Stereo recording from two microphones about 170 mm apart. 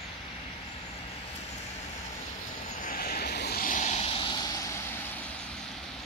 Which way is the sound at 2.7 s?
55° left (ahead or behind).